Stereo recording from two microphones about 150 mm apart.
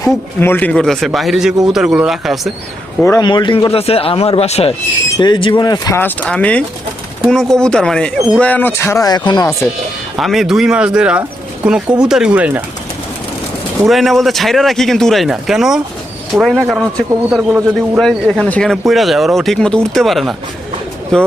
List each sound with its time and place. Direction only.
0.3 s speech: 10° left (ahead or behind)
3.0 s speech: 20° left (ahead or behind)
3.2 s speech: 30° left (ahead or behind)
5.2 s speech: 30° left (ahead or behind)
6.0 s speech: 10° left (ahead or behind); by 9.5 s 30° left (ahead or behind)
10.2 s speech: centre (ahead or behind)
13.8 s speech: centre (ahead or behind)
18.3 s speech: 5° left (ahead or behind)